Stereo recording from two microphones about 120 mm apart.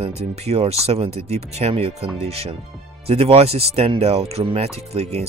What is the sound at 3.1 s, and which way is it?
Speech, 55° right (ahead or behind).